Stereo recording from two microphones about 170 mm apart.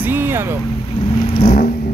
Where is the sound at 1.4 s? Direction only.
40° left (ahead or behind).